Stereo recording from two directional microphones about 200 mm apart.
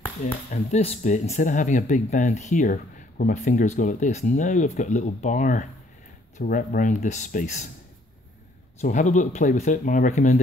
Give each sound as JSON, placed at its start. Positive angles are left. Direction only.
{"t": 0.2, "sound": "speech", "side_deg": 45}
{"t": 8.8, "sound": "speech", "side_deg": 40}